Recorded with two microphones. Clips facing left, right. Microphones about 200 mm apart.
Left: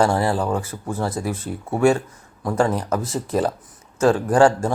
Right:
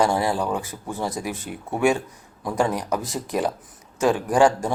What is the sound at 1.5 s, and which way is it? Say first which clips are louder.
Speech: left 4 dB; 35° left (ahead or behind).